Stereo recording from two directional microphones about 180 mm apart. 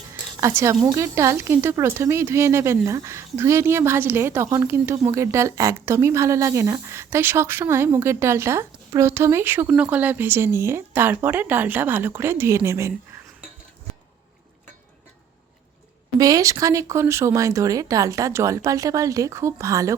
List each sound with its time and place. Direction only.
0.1 s a sound: 15° right (ahead or behind)
0.9 s a woman's voice: 15° right (ahead or behind)
16.1 s a woman's voice: 20° right (ahead or behind)